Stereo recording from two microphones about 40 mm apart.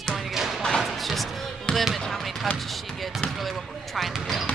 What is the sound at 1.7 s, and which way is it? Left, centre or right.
Speech, left.